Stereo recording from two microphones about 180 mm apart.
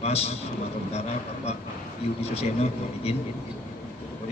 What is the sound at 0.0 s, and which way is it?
A man's voice, 35° left (ahead or behind).